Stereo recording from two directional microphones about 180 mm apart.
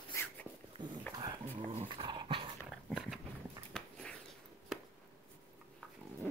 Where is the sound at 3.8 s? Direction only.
5° left (ahead or behind).